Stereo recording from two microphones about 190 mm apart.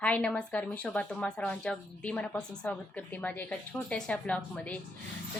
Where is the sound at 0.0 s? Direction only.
5° left (ahead or behind).